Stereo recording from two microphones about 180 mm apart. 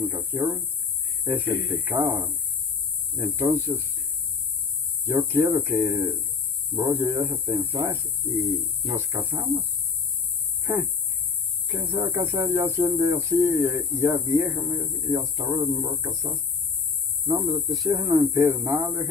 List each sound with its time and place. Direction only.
0.0 s speech: 10° right (ahead or behind)
5.0 s speech: 10° right (ahead or behind)
10.6 s a sound: 10° right (ahead or behind)
11.6 s speech: 15° right (ahead or behind)
17.8 s speech: 20° right (ahead or behind)